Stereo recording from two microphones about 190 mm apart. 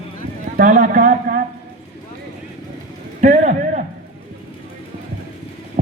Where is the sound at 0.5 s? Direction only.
45° right (ahead or behind).